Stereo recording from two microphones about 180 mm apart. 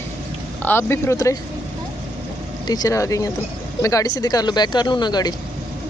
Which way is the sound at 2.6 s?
20° left (ahead or behind).